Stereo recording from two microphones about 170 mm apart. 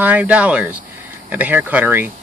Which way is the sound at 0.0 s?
10° right (ahead or behind).